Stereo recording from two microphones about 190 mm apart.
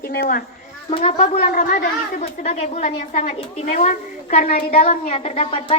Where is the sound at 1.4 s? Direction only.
45° left (ahead or behind).